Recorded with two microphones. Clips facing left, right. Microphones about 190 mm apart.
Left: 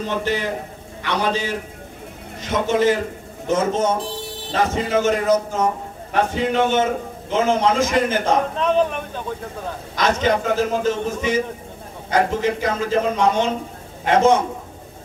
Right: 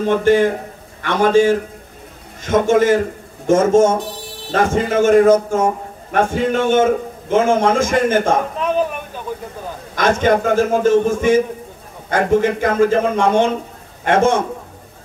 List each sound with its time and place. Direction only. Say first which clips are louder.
0.0 s a man's voice: right 10 dB; 50° right (ahead or behind)
8.5 s a man's voice: even; 5° right (ahead or behind)
9.9 s a man's voice: right 4 dB; 50° right (ahead or behind)